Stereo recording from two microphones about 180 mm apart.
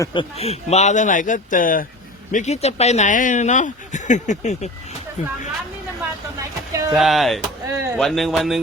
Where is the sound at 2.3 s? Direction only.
40° left (ahead or behind).